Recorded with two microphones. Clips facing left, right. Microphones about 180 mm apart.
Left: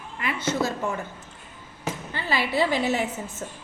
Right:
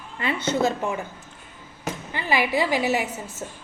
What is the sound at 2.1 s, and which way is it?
Speech, 15° right (ahead or behind).